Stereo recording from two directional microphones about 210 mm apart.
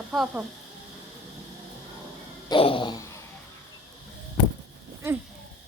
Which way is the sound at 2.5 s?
25° left (ahead or behind).